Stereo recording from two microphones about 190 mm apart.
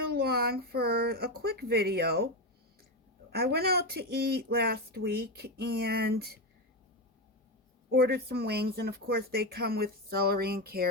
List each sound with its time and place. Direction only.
0.1 s speech: 55° right (ahead or behind)
7.9 s speech: 55° right (ahead or behind)